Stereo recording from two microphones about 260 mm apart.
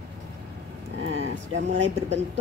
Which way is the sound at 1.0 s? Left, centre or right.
Right.